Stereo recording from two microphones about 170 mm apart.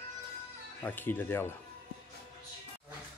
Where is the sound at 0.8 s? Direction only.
10° left (ahead or behind).